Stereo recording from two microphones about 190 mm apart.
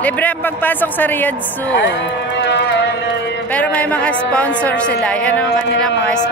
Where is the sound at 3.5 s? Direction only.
10° left (ahead or behind).